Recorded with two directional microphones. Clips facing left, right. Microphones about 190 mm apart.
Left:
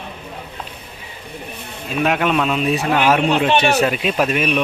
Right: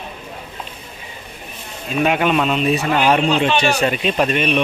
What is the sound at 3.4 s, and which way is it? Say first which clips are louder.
Speech: left 1 dB; 60° left (ahead or behind).